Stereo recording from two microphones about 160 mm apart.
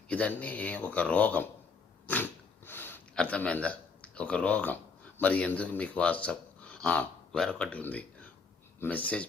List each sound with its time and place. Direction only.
0.1 s speech: 10° left (ahead or behind)
2.0 s a sound: 10° left (ahead or behind)
5.2 s speech: 10° left (ahead or behind)